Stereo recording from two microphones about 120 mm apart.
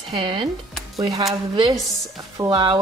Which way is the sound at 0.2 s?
45° right (ahead or behind).